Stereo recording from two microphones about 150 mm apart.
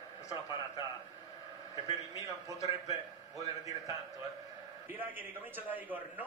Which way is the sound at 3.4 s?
25° right (ahead or behind).